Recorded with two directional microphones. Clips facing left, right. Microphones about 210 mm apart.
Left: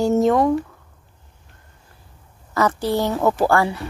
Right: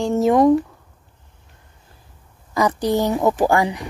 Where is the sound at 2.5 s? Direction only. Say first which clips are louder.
Right 1 dB; 15° right (ahead or behind).